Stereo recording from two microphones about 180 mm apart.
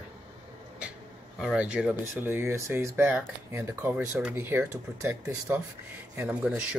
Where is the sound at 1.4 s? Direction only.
5° right (ahead or behind).